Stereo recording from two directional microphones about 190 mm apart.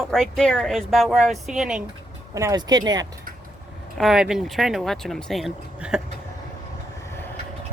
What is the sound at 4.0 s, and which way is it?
Speech, 5° right (ahead or behind).